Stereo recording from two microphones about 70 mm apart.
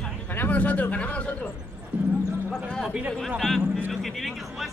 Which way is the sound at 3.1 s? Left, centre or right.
Centre.